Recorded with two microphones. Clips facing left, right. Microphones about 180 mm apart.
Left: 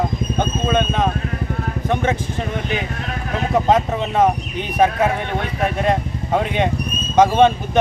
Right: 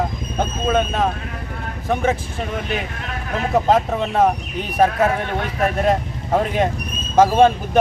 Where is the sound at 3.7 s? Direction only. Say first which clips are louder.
Even; centre (ahead or behind).